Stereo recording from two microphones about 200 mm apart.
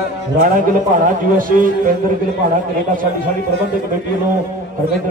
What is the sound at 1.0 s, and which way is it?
Speech, 45° right (ahead or behind).